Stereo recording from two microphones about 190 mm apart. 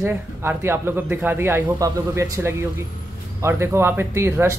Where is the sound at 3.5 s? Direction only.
15° right (ahead or behind).